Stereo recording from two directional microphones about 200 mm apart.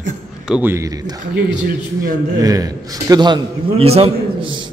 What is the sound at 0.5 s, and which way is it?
Speech, 10° right (ahead or behind).